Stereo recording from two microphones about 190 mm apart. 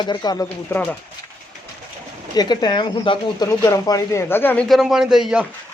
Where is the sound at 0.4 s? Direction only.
10° left (ahead or behind).